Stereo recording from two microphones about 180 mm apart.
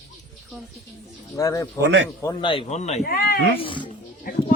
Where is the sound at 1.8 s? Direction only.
75° right (ahead or behind).